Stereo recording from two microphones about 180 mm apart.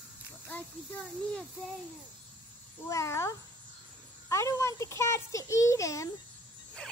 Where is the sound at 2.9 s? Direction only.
15° left (ahead or behind).